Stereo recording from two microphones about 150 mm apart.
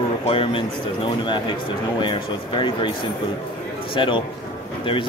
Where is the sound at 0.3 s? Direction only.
35° left (ahead or behind).